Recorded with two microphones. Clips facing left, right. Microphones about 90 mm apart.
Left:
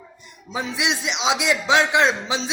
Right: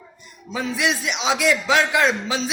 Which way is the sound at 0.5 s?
20° left (ahead or behind).